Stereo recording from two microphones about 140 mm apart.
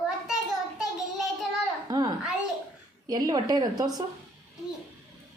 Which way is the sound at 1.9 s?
25° right (ahead or behind).